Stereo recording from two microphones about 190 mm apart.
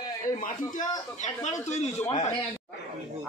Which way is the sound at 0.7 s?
40° left (ahead or behind).